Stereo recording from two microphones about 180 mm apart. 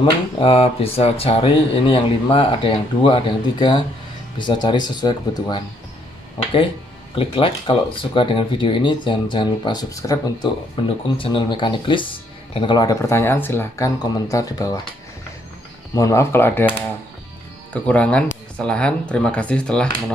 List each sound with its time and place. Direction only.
0.0 s speech: 30° left (ahead or behind)
7.2 s speech: 30° left (ahead or behind)
15.9 s speech: 15° left (ahead or behind)
17.7 s speech: 5° left (ahead or behind)